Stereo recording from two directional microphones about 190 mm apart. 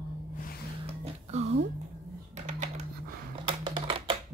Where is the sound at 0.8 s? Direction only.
35° right (ahead or behind).